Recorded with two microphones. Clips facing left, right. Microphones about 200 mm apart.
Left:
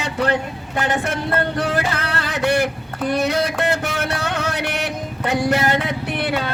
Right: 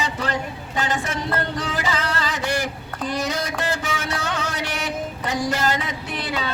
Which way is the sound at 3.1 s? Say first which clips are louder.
Left 6 dB; 60° left (ahead or behind).